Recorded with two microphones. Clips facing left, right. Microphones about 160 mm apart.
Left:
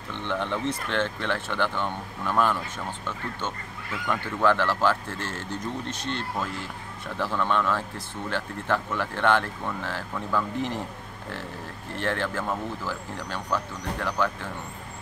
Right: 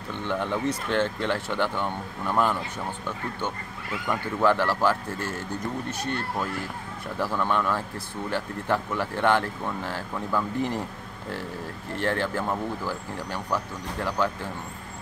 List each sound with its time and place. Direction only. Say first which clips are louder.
0.1 s speech: right 1 dB; 15° right (ahead or behind)
7.2 s speech: even; 10° right (ahead or behind)
11.9 s speech: right 2 dB; 15° right (ahead or behind)